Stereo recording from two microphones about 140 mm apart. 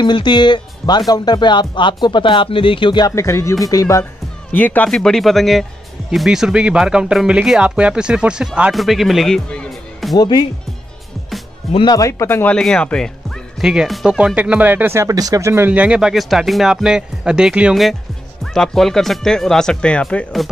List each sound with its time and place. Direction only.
0.0 s speech: 30° left (ahead or behind)
4.0 s speech: 10° left (ahead or behind)
10.1 s speech: 30° left (ahead or behind)
11.7 s speech: 30° left (ahead or behind)
12.5 s speech: 5° left (ahead or behind)